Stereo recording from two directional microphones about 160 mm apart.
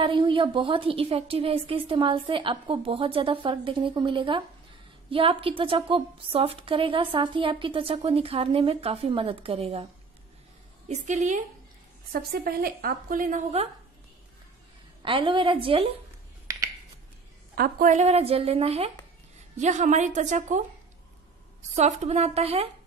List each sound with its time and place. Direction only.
0.0 s a woman's voice: 30° right (ahead or behind)
10.9 s a woman's voice: 45° right (ahead or behind)
12.1 s a woman's voice: 70° right (ahead or behind)
15.0 s a woman's voice: 30° right (ahead or behind)
16.4 s finger snapping: 25° right (ahead or behind)
17.6 s a woman's voice: 65° right (ahead or behind)
17.9 s a woman's voice: 40° right (ahead or behind)
21.7 s a woman's voice: 45° right (ahead or behind)